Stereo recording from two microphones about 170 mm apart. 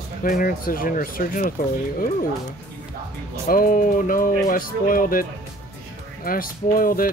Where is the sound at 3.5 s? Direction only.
55° left (ahead or behind).